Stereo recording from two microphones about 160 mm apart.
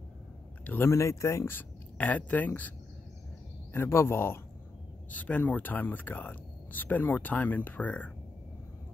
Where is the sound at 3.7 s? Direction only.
15° left (ahead or behind).